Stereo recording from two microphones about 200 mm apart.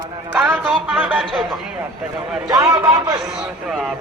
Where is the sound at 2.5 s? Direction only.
20° right (ahead or behind).